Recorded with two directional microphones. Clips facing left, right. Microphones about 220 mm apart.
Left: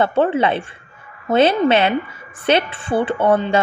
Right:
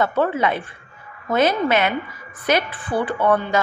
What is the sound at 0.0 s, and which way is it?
A woman's voice, 30° left (ahead or behind).